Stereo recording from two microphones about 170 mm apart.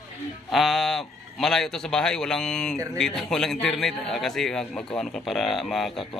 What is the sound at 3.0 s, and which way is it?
A man's voice, 5° left (ahead or behind).